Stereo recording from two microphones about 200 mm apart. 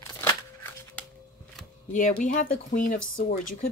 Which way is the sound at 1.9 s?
40° left (ahead or behind).